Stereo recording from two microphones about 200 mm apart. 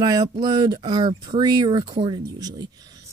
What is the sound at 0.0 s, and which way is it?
Speech, 20° right (ahead or behind).